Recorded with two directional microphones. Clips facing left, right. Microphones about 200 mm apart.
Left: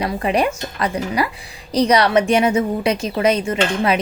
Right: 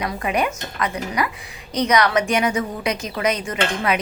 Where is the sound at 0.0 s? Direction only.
30° left (ahead or behind).